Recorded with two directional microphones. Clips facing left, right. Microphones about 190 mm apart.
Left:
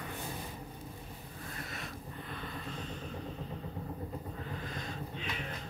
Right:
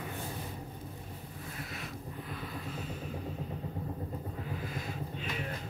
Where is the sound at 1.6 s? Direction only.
Centre (ahead or behind).